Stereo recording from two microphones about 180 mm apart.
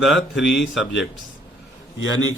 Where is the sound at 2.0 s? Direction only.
90° left.